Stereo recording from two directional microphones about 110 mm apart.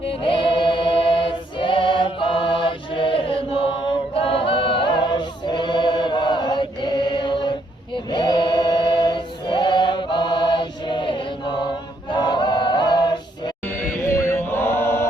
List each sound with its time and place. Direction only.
0.0 s choir: 55° left (ahead or behind)
4.1 s a capella: 60° left (ahead or behind)
8.1 s choir: 40° left (ahead or behind)
13.7 s chant: 20° left (ahead or behind)